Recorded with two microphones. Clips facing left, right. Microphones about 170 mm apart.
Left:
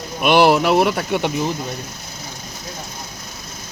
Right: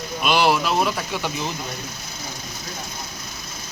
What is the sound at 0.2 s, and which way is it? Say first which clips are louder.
Speech: left 6 dB; 60° left (ahead or behind).